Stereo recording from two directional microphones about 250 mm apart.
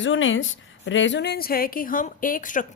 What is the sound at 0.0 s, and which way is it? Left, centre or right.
A woman's voice, left.